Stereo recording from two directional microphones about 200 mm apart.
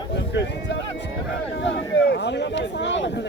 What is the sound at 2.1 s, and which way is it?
Speech, 60° left (ahead or behind).